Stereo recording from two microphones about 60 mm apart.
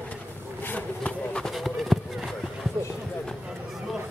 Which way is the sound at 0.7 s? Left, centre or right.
Left.